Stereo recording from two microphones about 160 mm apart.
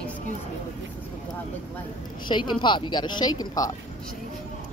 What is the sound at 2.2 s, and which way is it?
A woman's voice, 30° left (ahead or behind).